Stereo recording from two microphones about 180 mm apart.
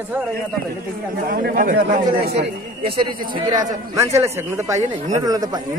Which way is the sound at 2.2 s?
65° right (ahead or behind).